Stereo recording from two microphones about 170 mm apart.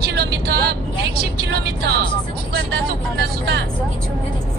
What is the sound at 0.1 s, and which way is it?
Vehicle, 70° right (ahead or behind).